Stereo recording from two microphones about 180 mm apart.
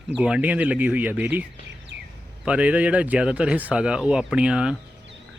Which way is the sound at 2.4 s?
5° right (ahead or behind).